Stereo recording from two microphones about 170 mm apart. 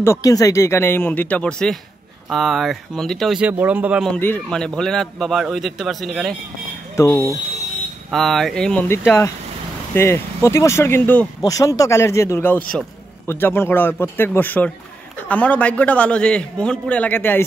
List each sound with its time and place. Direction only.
0.0 s a man's voice: 15° left (ahead or behind); by 4.1 s 10° right (ahead or behind)
4.1 s a man's voice: 10° left (ahead or behind)
7.0 s speech: 15° left (ahead or behind)
8.1 s a man's voice: centre (ahead or behind)